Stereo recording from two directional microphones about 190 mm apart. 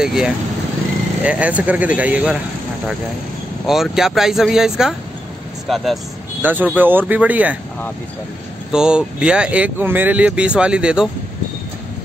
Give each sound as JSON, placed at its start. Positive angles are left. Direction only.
{"t": 0.0, "sound": "speech", "side_deg": -5}
{"t": 3.6, "sound": "speech", "side_deg": 0}
{"t": 8.7, "sound": "speech", "side_deg": -5}